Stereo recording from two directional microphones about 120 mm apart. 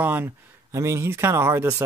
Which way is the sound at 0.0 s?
15° right (ahead or behind).